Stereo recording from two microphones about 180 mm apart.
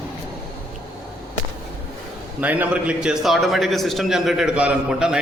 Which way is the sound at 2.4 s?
10° right (ahead or behind).